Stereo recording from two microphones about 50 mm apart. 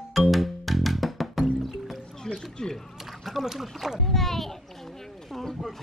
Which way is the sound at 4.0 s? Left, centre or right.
Centre.